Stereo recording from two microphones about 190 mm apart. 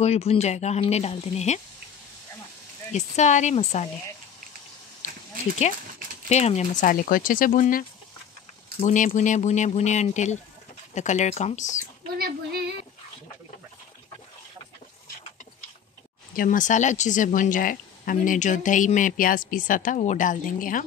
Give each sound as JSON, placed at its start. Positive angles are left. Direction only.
{"t": 0.0, "sound": "speech", "side_deg": 35}
{"t": 2.9, "sound": "speech", "side_deg": 40}
{"t": 5.7, "sound": "speech", "side_deg": 40}
{"t": 12.2, "sound": "child singing", "side_deg": -55}
{"t": 16.3, "sound": "speech", "side_deg": 45}